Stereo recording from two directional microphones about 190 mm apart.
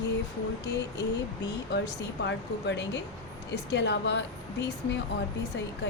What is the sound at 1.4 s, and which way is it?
Speech, 60° left (ahead or behind).